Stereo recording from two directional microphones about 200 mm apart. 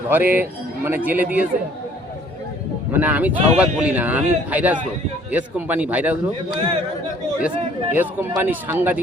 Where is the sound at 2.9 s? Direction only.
10° right (ahead or behind).